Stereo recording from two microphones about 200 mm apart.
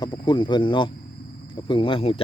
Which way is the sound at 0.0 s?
20° left (ahead or behind).